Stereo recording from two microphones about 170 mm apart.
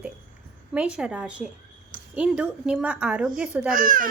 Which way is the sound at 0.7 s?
5° right (ahead or behind).